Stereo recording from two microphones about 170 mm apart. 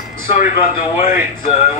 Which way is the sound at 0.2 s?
50° left (ahead or behind).